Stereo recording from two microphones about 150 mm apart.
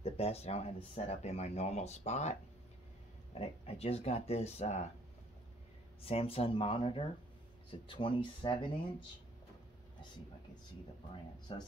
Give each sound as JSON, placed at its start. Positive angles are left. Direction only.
{"t": 0.0, "sound": "speech", "side_deg": 45}
{"t": 3.3, "sound": "speech", "side_deg": 40}
{"t": 6.0, "sound": "speech", "side_deg": 40}
{"t": 11.5, "sound": "speech", "side_deg": 35}